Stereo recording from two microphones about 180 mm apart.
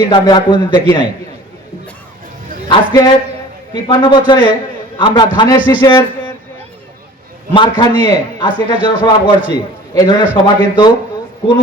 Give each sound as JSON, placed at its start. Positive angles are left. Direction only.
{"t": 0.1, "sound": "a man's voice", "side_deg": 25}
{"t": 2.6, "sound": "a man's voice", "side_deg": 20}
{"t": 7.5, "sound": "a man's voice", "side_deg": 25}